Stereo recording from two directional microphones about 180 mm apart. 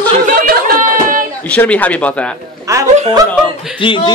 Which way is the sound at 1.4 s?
5° left (ahead or behind).